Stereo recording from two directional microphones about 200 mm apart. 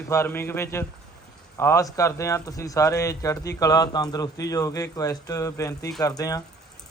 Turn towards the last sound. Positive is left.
turn(degrees=15)  # may be behind; listen again after turning